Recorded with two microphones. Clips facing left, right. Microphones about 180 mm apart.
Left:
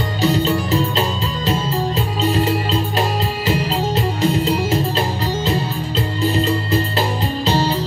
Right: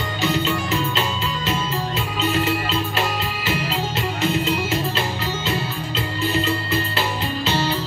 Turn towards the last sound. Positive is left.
turn(degrees=35)  # may be behind; listen again after turning